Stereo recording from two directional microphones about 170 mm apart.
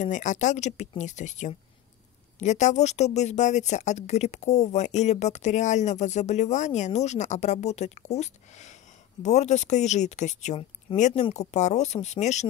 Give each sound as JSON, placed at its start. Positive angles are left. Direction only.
{"t": 0.0, "sound": "speech", "side_deg": 45}